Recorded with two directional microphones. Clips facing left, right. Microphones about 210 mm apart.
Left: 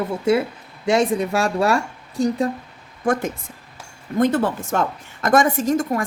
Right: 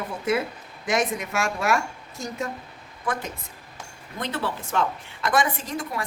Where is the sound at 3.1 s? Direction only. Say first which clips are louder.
Left 9 dB; 45° left (ahead or behind).